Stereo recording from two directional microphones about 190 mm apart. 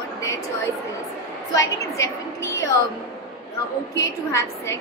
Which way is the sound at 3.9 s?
15° left (ahead or behind).